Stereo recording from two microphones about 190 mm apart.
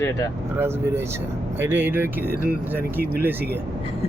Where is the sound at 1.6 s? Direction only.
10° right (ahead or behind).